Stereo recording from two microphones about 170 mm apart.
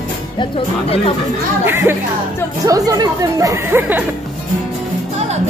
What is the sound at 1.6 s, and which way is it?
Speech, 15° right (ahead or behind).